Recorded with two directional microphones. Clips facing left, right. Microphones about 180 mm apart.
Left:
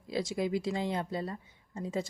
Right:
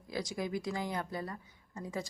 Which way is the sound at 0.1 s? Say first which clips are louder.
Left 5 dB; 25° left (ahead or behind).